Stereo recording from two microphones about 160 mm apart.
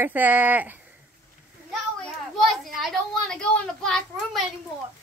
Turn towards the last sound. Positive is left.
turn(degrees=5)  # may be behind; listen again after turning